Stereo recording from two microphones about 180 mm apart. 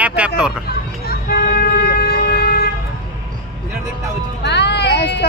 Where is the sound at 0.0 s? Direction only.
10° right (ahead or behind).